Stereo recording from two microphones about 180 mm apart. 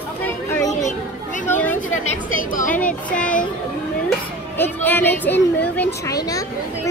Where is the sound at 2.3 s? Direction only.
50° left (ahead or behind).